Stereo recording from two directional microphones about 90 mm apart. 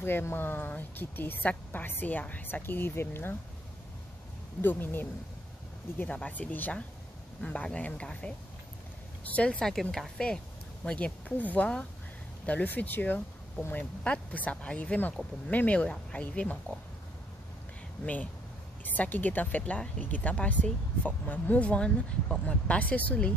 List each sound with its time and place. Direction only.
0.0 s a woman's voice: 25° left (ahead or behind)
4.6 s a woman's voice: 25° left (ahead or behind)
18.0 s speech: 15° left (ahead or behind)